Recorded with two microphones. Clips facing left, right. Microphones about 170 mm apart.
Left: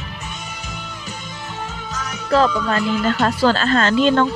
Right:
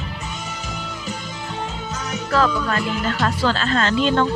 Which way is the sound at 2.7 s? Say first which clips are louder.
Left 4 dB; 40° left (ahead or behind).